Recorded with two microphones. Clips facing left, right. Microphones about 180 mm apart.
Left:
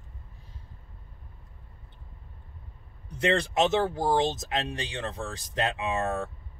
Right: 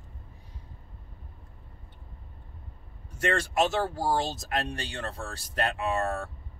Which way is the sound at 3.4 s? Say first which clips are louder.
Left 2 dB; 20° left (ahead or behind).